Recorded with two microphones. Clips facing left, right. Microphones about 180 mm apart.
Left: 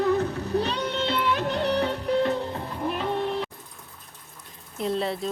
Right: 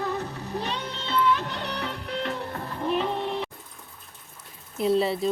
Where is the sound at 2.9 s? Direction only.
Centre (ahead or behind).